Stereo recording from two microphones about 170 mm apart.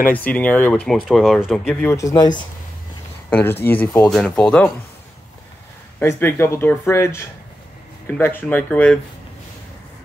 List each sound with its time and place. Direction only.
0.0 s speech: 10° left (ahead or behind)
2.0 s speech: 20° left (ahead or behind)
3.3 s speech: 10° left (ahead or behind)
4.1 s speech: 5° left (ahead or behind)
5.9 s speech: 15° left (ahead or behind)